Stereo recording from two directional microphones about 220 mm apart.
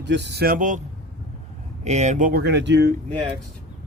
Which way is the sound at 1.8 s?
30° right (ahead or behind).